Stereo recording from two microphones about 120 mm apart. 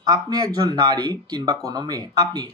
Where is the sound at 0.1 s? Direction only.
30° right (ahead or behind).